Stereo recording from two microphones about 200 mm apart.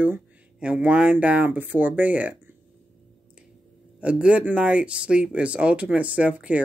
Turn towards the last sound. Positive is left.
turn(degrees=-5)  # may be behind; listen again after turning